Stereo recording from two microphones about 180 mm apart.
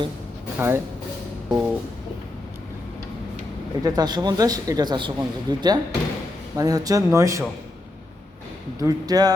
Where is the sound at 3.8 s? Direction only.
20° right (ahead or behind).